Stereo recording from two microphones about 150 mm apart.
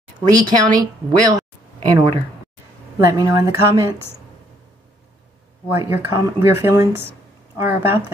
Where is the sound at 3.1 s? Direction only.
20° right (ahead or behind).